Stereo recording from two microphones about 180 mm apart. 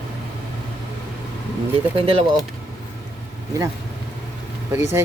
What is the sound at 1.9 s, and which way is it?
Speech, 30° right (ahead or behind).